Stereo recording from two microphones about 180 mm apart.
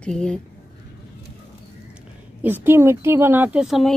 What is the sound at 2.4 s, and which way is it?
Speech, 10° right (ahead or behind).